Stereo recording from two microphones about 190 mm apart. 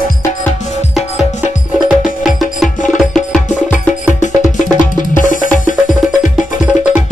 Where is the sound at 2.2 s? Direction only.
Centre (ahead or behind).